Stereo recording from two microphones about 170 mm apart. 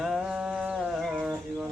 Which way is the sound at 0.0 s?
5° right (ahead or behind).